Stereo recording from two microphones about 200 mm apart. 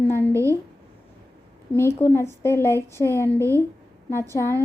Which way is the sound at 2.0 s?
10° left (ahead or behind).